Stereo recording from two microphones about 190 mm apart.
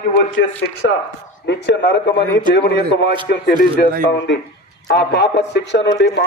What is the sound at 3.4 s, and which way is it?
A man's voice, 60° left (ahead or behind).